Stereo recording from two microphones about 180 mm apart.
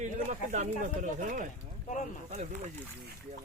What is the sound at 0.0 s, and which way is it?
Speech, 45° right (ahead or behind).